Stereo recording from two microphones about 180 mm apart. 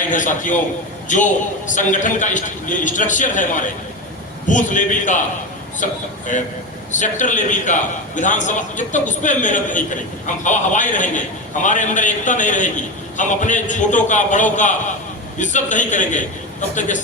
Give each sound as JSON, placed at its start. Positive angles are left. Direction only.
{"t": 0.1, "sound": "a man's voice", "side_deg": 45}